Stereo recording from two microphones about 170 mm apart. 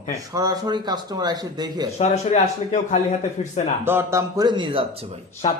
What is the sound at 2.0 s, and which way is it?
Speech, 40° left (ahead or behind).